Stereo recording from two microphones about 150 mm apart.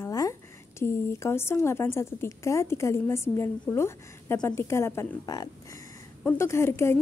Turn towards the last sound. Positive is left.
turn(degrees=15)  # may be behind; listen again after turning